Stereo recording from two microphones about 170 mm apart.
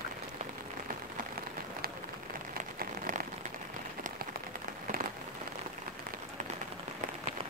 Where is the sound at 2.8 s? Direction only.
55° right (ahead or behind).